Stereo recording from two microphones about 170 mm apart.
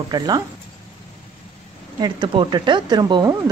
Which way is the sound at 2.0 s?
30° right (ahead or behind).